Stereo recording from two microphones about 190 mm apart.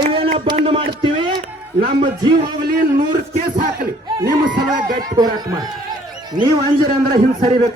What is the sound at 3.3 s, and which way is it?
Speech, 45° right (ahead or behind).